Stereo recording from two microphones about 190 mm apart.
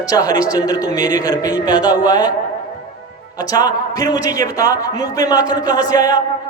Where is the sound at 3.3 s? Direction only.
20° left (ahead or behind).